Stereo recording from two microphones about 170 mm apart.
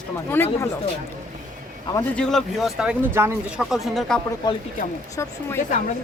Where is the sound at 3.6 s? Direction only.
Centre (ahead or behind).